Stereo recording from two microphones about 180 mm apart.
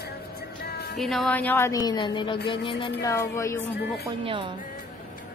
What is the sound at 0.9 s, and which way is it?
A woman's voice, centre (ahead or behind).